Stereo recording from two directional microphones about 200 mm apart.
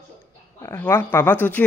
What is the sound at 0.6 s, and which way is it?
Speech, 10° left (ahead or behind).